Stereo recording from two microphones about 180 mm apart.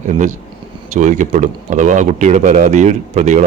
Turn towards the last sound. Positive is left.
turn(degrees=-40)  # may be behind; listen again after turning